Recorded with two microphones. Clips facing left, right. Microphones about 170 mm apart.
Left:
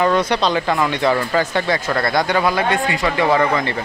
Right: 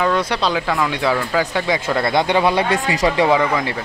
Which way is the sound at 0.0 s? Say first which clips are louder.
Left 2 dB; centre (ahead or behind).